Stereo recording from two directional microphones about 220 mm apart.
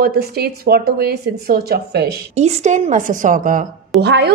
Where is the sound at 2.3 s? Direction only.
30° right (ahead or behind).